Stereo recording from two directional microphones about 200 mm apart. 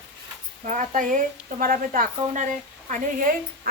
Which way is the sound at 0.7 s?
40° right (ahead or behind).